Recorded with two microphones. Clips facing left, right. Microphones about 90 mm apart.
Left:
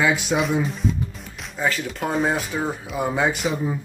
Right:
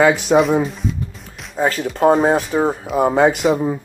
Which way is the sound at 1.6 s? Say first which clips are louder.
Right 8 dB; 40° right (ahead or behind).